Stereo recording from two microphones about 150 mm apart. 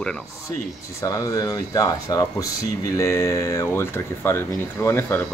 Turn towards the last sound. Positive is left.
turn(degrees=15)  # may be behind; listen again after turning